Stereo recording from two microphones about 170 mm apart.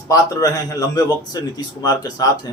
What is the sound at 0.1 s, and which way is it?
A man's voice, 20° left (ahead or behind).